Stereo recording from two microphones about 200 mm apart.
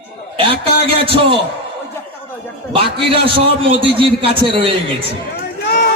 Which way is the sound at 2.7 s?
25° right (ahead or behind).